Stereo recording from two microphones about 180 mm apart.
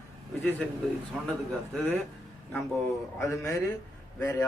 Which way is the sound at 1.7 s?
10° left (ahead or behind).